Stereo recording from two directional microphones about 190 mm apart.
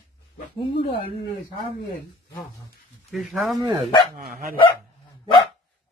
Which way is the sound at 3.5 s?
25° right (ahead or behind).